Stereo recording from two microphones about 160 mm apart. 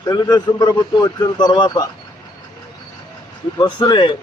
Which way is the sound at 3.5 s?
25° left (ahead or behind).